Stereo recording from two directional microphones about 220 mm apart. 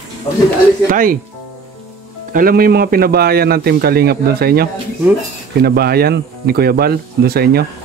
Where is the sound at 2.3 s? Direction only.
40° right (ahead or behind).